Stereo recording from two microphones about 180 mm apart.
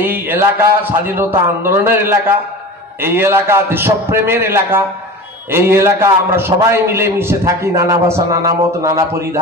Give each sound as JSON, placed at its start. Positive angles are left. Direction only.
{"t": 0.0, "sound": "a man's voice", "side_deg": -10}